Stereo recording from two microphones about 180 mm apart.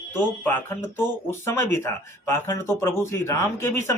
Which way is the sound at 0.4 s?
15° left (ahead or behind).